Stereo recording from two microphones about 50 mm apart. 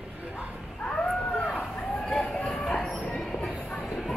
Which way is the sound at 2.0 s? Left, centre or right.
Centre.